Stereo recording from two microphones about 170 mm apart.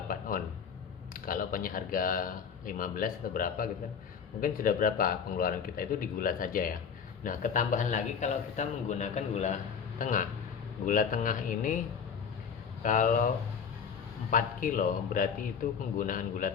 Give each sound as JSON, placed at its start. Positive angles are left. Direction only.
{"t": 0.1, "sound": "a sound", "side_deg": 55}
{"t": 1.1, "sound": "a man's voice", "side_deg": 55}
{"t": 12.8, "sound": "a man's voice", "side_deg": 50}
{"t": 14.3, "sound": "a man's voice", "side_deg": 50}